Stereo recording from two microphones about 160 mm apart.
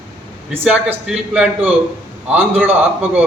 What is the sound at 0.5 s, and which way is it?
A man's voice, 10° right (ahead or behind).